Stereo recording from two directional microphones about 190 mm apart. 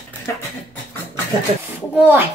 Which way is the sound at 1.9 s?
10° right (ahead or behind).